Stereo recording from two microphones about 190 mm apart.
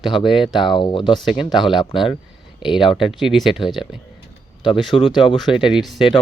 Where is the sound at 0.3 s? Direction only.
Centre (ahead or behind).